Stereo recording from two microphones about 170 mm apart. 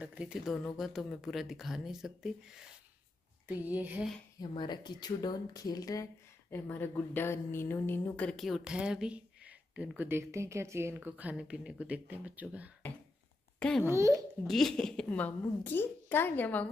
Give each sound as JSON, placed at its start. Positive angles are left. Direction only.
{"t": 0.0, "sound": "a woman's voice", "side_deg": -5}
{"t": 4.4, "sound": "a woman's voice", "side_deg": 25}
{"t": 13.6, "sound": "a child's voice", "side_deg": 5}
{"t": 13.8, "sound": "a woman's voice", "side_deg": -15}
{"t": 14.4, "sound": "a woman's voice", "side_deg": 0}